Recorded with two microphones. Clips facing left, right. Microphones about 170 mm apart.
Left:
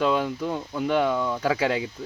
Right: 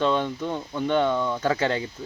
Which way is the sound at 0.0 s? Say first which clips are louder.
Even; 5° left (ahead or behind).